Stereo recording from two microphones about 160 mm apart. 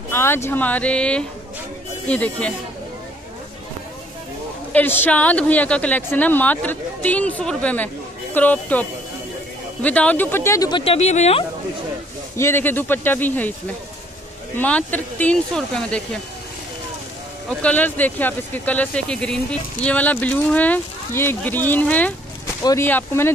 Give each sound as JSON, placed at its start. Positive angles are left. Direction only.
{"t": 0.1, "sound": "speech", "side_deg": 15}
{"t": 4.7, "sound": "speech", "side_deg": 10}
{"t": 10.8, "sound": "speech", "side_deg": 40}
{"t": 12.4, "sound": "speech", "side_deg": 15}
{"t": 14.5, "sound": "speech", "side_deg": 10}
{"t": 17.6, "sound": "speech", "side_deg": 10}
{"t": 22.6, "sound": "speech", "side_deg": 25}